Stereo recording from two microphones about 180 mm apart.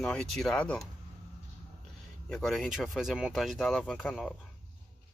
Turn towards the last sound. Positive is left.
turn(degrees=0)  # may be behind; listen again after turning